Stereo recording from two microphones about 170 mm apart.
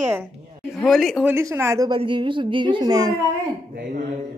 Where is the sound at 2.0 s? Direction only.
30° right (ahead or behind).